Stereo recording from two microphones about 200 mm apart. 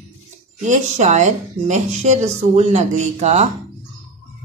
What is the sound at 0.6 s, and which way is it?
A woman's voice, 35° right (ahead or behind).